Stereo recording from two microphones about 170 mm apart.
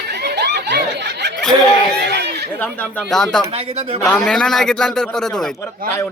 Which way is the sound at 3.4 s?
35° right (ahead or behind).